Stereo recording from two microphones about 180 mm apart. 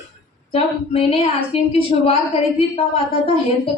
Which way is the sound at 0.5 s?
30° left (ahead or behind).